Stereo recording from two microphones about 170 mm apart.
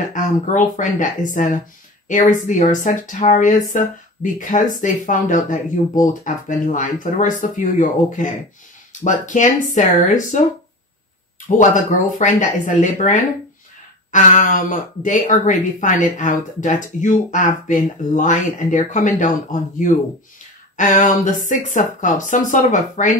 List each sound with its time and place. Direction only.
0.1 s speech: 50° left (ahead or behind)
11.4 s speech: 45° left (ahead or behind)
20.7 s speech: 50° left (ahead or behind)